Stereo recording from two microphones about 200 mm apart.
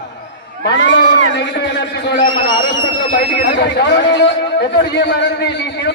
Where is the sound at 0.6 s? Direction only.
65° left (ahead or behind).